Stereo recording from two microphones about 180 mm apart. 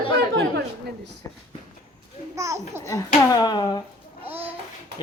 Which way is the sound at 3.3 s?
20° left (ahead or behind).